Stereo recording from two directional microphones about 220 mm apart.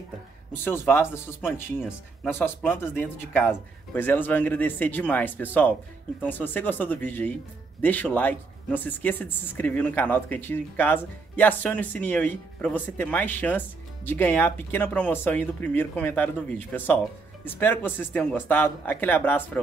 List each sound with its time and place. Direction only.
0.7 s speech: 10° left (ahead or behind)